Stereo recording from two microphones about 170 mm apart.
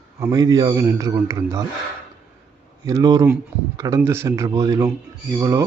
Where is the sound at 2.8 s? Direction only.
20° right (ahead or behind).